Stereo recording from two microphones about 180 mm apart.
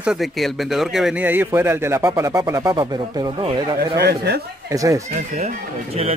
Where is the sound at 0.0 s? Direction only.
Centre (ahead or behind); by 3.6 s 25° right (ahead or behind).